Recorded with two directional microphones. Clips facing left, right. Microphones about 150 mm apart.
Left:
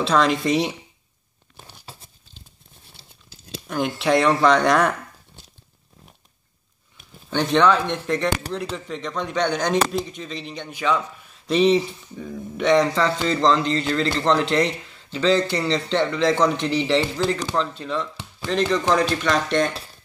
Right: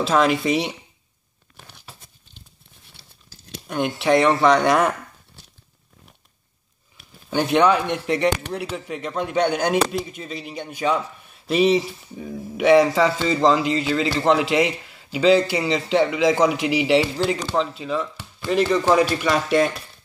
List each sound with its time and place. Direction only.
0.0 s speech: 5° right (ahead or behind)
3.6 s speech: centre (ahead or behind)
7.2 s a man's voice: 10° right (ahead or behind)